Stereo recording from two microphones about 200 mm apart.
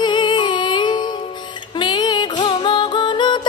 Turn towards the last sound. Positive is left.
turn(degrees=25)  # may be behind; listen again after turning